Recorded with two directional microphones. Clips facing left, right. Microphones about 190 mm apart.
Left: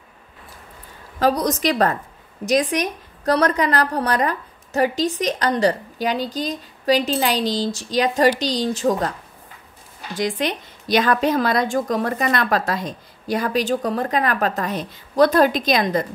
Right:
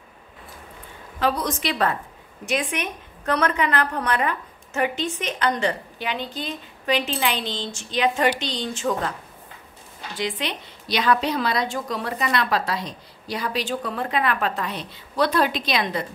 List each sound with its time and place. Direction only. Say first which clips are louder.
1.2 s a woman's voice: left 5 dB; 40° left (ahead or behind)
10.1 s a woman's voice: left 5 dB; 45° left (ahead or behind)